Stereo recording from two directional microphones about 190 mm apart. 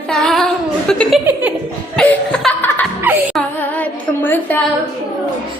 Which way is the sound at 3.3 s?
10° left (ahead or behind).